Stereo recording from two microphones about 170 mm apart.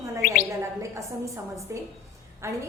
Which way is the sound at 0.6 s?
15° right (ahead or behind).